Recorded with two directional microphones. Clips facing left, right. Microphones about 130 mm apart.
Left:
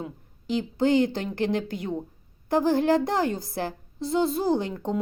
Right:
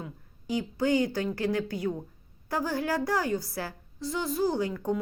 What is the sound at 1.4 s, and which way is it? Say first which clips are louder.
A woman's voice: left 6 dB; 20° left (ahead or behind).